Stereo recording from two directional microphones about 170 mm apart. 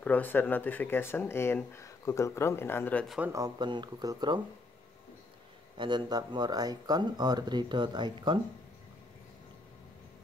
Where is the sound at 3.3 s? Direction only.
25° right (ahead or behind).